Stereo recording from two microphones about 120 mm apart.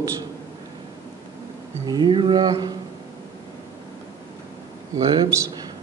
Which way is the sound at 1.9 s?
40° right (ahead or behind).